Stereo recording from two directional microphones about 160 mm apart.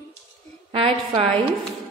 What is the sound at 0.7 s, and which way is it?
Speech, 35° right (ahead or behind).